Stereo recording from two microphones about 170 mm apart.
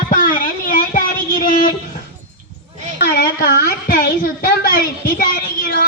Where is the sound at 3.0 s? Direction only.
60° left (ahead or behind).